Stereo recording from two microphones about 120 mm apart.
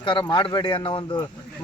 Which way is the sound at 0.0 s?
45° left (ahead or behind).